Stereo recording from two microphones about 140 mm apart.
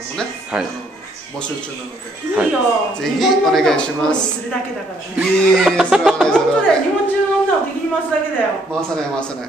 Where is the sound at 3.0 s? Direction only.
Centre (ahead or behind).